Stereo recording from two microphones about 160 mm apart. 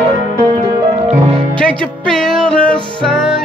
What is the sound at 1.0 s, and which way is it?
Music, 45° right (ahead or behind).